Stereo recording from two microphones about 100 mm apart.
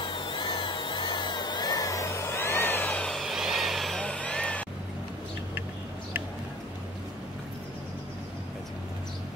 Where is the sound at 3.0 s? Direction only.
Centre (ahead or behind).